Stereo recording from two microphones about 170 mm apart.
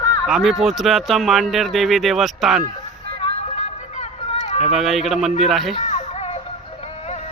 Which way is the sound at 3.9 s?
40° left (ahead or behind).